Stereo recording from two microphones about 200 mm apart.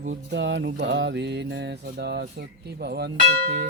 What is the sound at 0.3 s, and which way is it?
Speech, 65° right (ahead or behind).